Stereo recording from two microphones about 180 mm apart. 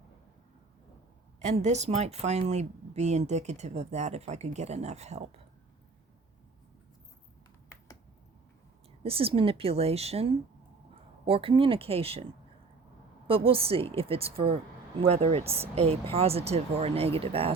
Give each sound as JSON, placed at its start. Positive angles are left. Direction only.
{"t": 1.5, "sound": "a woman's voice", "side_deg": -40}
{"t": 9.0, "sound": "a woman's voice", "side_deg": -30}